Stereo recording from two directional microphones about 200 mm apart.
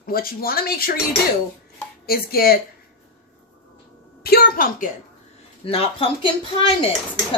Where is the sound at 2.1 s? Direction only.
50° left (ahead or behind).